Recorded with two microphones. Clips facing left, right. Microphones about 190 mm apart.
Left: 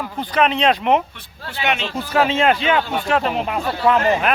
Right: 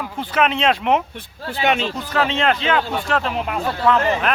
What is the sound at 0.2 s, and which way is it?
Speech, centre (ahead or behind).